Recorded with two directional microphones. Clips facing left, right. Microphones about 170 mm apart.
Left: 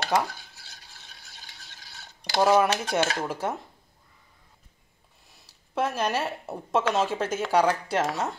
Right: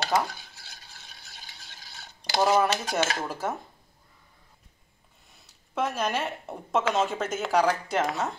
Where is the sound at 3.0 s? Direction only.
5° right (ahead or behind).